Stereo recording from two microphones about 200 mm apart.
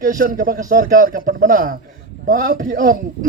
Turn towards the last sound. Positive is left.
turn(degrees=-40)  # may be behind; listen again after turning